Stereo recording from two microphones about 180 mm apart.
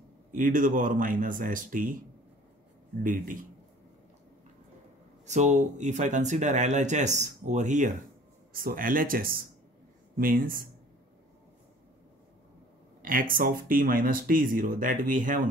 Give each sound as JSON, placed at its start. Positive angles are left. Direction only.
{"t": 0.3, "sound": "speech", "side_deg": -45}
{"t": 3.0, "sound": "speech", "side_deg": -50}
{"t": 5.2, "sound": "speech", "side_deg": -40}
{"t": 13.0, "sound": "speech", "side_deg": -50}